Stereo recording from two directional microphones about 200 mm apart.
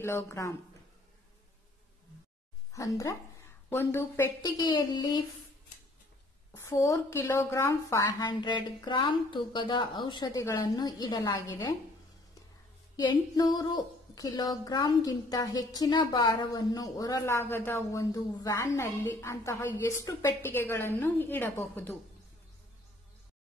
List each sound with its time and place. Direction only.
0.0 s a woman's voice: 15° left (ahead or behind)
2.7 s a woman's voice: 15° left (ahead or behind)
6.5 s a woman's voice: 15° left (ahead or behind)
12.9 s a woman's voice: 20° left (ahead or behind)